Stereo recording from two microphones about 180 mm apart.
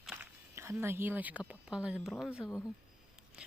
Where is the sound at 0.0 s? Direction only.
5° right (ahead or behind).